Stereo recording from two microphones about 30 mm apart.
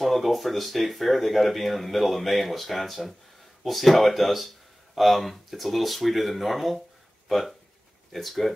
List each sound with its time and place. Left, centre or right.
0.0 s speech: centre